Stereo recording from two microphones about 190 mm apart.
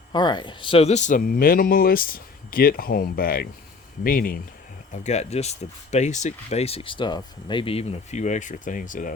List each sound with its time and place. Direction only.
0.1 s speech: 25° left (ahead or behind); by 4.4 s 50° left (ahead or behind)
5.0 s speech: 35° left (ahead or behind)